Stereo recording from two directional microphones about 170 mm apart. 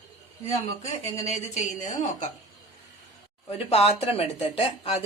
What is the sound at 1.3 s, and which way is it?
A woman's voice, 45° left (ahead or behind).